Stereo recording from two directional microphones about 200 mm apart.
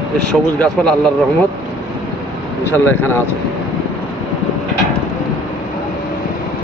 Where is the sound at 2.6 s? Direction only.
10° left (ahead or behind).